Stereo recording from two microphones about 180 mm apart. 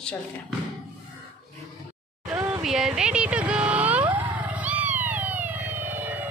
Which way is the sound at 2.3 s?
5° right (ahead or behind).